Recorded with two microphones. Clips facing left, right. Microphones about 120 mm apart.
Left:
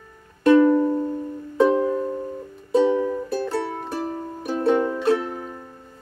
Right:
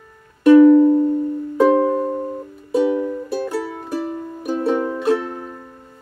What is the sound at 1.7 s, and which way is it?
Music, 35° right (ahead or behind).